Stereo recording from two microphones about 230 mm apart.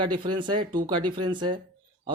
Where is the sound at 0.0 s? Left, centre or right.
Right.